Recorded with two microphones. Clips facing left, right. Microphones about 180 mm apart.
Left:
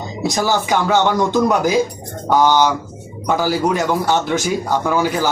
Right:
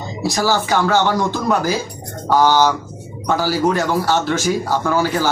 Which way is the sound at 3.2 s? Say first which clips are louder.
Even; 15° left (ahead or behind).